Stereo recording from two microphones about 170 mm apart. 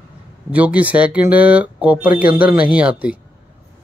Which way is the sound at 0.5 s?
10° right (ahead or behind).